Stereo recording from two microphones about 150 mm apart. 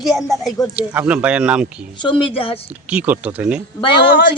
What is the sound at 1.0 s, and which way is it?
Speech, 10° right (ahead or behind).